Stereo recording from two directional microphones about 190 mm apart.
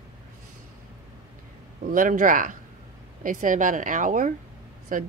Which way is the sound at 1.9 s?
45° right (ahead or behind).